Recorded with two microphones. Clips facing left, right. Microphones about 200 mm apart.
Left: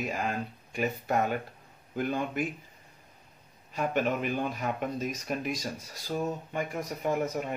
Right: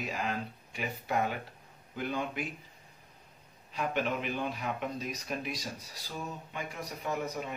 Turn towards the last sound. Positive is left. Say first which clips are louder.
# left 5 dB
turn(degrees=50)  # may be behind; listen again after turning